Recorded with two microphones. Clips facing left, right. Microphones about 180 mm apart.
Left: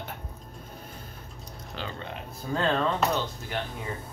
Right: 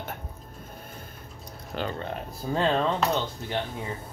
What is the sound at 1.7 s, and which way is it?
Speech, 50° right (ahead or behind).